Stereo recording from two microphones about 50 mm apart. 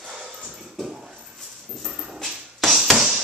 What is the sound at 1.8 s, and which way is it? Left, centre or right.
Dog, centre.